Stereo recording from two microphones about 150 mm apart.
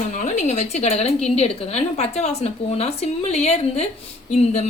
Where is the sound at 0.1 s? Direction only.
50° left (ahead or behind).